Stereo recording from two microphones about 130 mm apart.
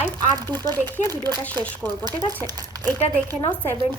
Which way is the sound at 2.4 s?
30° right (ahead or behind).